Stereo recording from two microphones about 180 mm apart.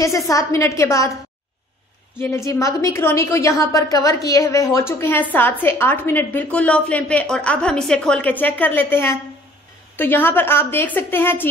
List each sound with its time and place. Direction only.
0.0 s a woman's voice: 20° left (ahead or behind)
2.1 s a woman's voice: 15° left (ahead or behind)